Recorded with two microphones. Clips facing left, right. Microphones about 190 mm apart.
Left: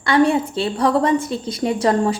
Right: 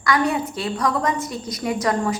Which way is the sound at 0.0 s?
30° left (ahead or behind).